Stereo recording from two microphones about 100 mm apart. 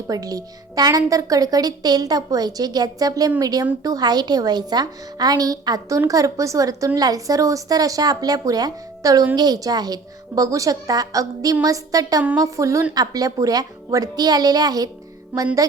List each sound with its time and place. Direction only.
0.1 s speech: 35° right (ahead or behind)
15.3 s speech: 15° right (ahead or behind)